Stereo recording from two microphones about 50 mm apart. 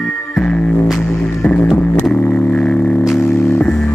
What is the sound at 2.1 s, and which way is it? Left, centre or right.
Guitar, left.